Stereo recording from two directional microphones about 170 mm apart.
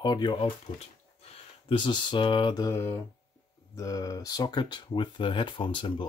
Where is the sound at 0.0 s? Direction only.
25° left (ahead or behind).